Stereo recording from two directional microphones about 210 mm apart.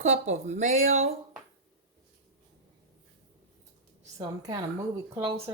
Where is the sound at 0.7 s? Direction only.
75° right (ahead or behind).